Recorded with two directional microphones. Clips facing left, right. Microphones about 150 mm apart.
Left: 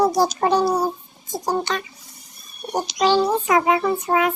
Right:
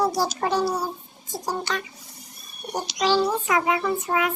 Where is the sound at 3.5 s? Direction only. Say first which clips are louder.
Left 4 dB; 35° left (ahead or behind).